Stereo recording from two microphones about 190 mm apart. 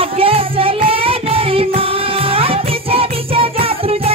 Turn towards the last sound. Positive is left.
turn(degrees=-30)  # may be behind; listen again after turning